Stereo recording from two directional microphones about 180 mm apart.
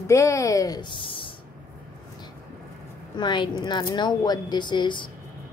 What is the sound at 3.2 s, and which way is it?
A woman's voice, 25° left (ahead or behind).